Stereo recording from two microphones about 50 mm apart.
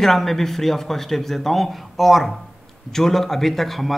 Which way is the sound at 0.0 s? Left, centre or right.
Centre.